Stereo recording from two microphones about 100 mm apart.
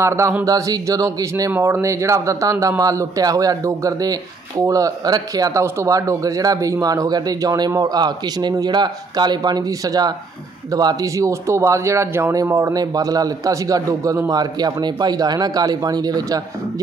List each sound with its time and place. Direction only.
0.0 s speech: 30° right (ahead or behind)